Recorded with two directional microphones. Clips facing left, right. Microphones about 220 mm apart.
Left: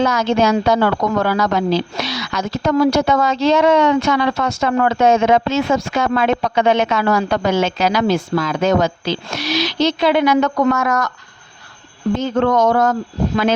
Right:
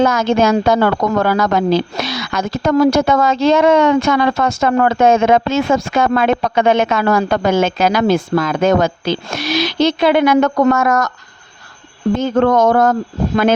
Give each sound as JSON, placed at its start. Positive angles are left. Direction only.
{"t": 0.0, "sound": "a woman's voice", "side_deg": -50}
{"t": 12.1, "sound": "a woman's voice", "side_deg": -50}